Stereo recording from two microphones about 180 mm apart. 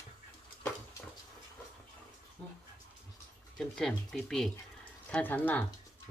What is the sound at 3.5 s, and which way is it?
Speech, 5° left (ahead or behind).